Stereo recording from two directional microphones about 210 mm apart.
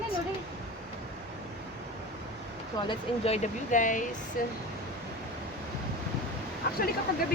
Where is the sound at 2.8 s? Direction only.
30° left (ahead or behind).